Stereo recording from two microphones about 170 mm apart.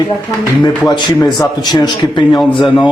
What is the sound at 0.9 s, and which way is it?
A man's voice, 25° left (ahead or behind).